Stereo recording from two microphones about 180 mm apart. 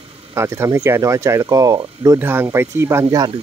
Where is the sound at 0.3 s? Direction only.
15° right (ahead or behind).